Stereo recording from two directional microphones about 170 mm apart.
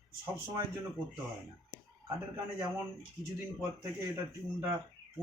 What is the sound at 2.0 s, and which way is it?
Speech, 20° right (ahead or behind).